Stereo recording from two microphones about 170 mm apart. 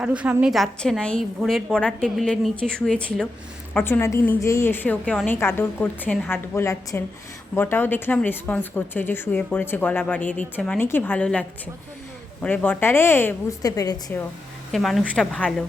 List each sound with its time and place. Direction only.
0.0 s a woman's voice: 5° right (ahead or behind); by 14.2 s 20° left (ahead or behind)
14.7 s a woman's voice: centre (ahead or behind)